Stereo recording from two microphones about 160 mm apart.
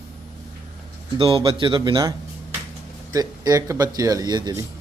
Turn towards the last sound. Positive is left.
turn(degrees=-25)  # may be behind; listen again after turning